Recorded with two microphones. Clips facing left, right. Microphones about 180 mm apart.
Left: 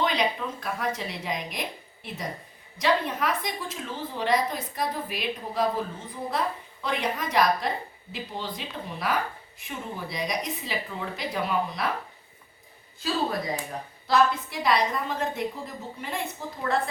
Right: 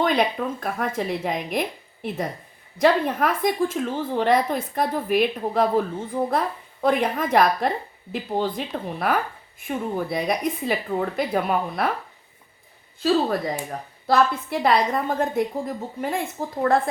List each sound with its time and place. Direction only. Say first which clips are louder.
0.0 s a woman's voice: right 5 dB; 50° right (ahead or behind)
14.1 s a woman's voice: right 3 dB; 55° right (ahead or behind)